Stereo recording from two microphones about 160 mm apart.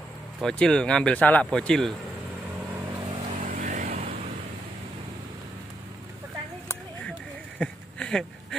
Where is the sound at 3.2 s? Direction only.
50° right (ahead or behind).